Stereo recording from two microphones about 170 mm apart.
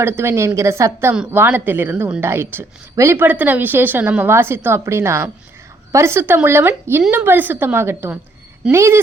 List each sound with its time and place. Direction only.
0.0 s a woman's voice: 15° right (ahead or behind)